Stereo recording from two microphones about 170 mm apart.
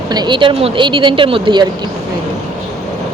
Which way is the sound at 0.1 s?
25° right (ahead or behind).